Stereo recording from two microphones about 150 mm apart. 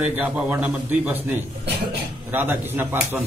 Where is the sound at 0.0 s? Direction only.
10° right (ahead or behind).